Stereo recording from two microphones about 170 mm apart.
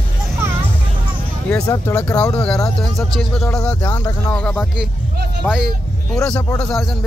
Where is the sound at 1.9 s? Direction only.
5° left (ahead or behind).